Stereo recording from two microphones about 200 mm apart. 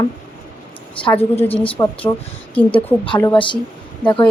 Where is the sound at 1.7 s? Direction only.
15° left (ahead or behind).